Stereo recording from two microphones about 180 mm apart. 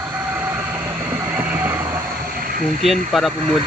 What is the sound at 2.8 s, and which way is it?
Speech, centre (ahead or behind).